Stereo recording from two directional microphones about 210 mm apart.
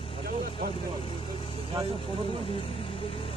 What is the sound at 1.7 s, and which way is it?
Vehicle, 25° right (ahead or behind).